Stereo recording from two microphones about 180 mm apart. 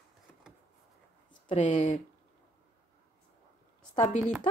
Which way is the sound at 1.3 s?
40° left (ahead or behind).